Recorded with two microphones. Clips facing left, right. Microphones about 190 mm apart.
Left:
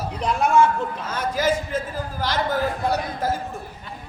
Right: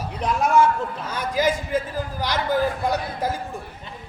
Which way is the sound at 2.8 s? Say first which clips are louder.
Left 1 dB; 15° right (ahead or behind).